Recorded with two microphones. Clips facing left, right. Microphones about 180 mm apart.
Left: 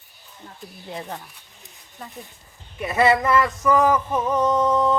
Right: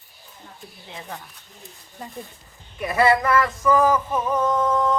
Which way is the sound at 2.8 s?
25° left (ahead or behind).